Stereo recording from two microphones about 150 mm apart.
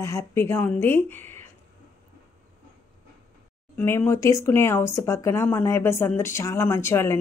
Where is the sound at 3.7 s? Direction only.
15° left (ahead or behind).